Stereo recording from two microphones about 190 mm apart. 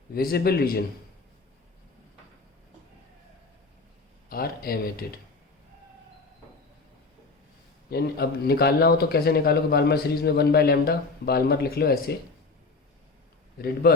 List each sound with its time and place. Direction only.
0.1 s speech: 50° left (ahead or behind)
4.3 s speech: 50° left (ahead or behind)
7.9 s speech: 55° left (ahead or behind)
13.8 s a man's voice: 55° left (ahead or behind)